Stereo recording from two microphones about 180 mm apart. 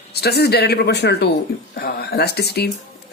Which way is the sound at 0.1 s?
65° left (ahead or behind).